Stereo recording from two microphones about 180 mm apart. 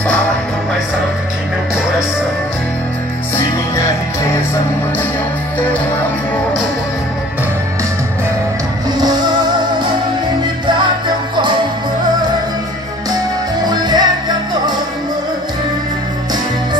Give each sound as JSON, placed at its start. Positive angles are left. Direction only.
{"t": 11.3, "sound": "music", "side_deg": -25}
{"t": 13.7, "sound": "music", "side_deg": -25}